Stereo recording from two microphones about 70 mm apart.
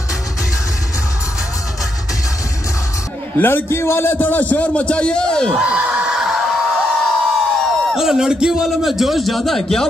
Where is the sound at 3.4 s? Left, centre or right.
Left; by 5.5 s centre.